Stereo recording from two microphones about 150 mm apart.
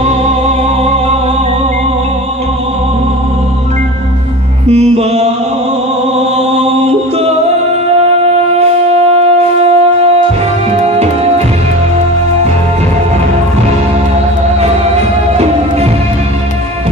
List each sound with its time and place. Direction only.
4.6 s music: 45° right (ahead or behind)
8.5 s wind instrument: 45° right (ahead or behind)
10.8 s music: 45° right (ahead or behind)